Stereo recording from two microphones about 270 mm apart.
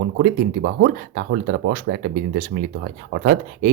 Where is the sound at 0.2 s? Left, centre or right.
Right.